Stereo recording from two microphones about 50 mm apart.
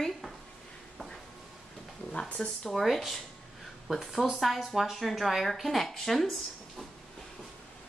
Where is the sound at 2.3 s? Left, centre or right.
Centre.